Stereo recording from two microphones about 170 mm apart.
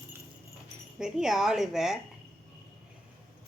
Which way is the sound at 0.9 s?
5° right (ahead or behind).